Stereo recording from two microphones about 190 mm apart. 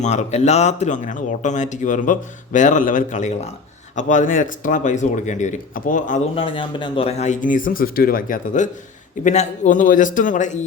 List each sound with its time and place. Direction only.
0.0 s speech: 40° left (ahead or behind)
6.3 s speech: 30° left (ahead or behind)